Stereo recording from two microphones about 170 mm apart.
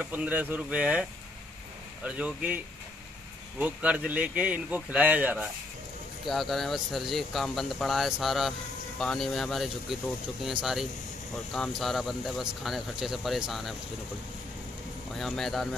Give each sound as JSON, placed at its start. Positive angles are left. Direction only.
{"t": 0.0, "sound": "speech", "side_deg": -10}
{"t": 2.0, "sound": "speech", "side_deg": -5}
{"t": 15.1, "sound": "speech", "side_deg": 0}